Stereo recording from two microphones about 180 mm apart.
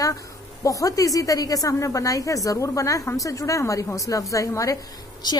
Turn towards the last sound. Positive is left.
turn(degrees=25)  # may be behind; listen again after turning